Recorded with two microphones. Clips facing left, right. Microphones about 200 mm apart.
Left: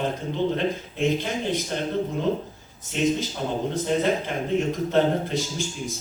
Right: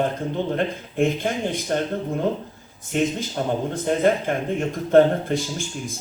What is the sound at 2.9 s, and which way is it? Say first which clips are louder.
A man's voice: right 1 dB; 50° right (ahead or behind).